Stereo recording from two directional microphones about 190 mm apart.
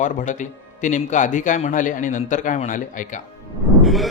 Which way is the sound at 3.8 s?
Centre (ahead or behind).